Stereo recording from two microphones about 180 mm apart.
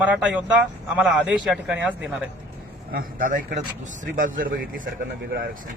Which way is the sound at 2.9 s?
50° right (ahead or behind).